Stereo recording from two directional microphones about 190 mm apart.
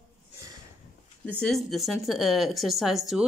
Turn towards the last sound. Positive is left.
turn(degrees=0)  # may be behind; listen again after turning